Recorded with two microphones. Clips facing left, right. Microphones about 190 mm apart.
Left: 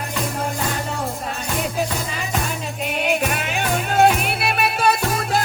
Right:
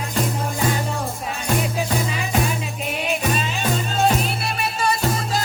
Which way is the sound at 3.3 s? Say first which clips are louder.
Even; 65° left (ahead or behind).